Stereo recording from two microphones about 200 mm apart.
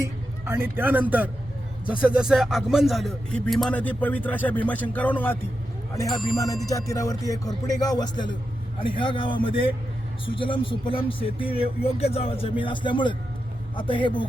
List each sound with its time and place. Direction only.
0.0 s a man's voice: 10° right (ahead or behind)
6.9 s speech: 15° left (ahead or behind)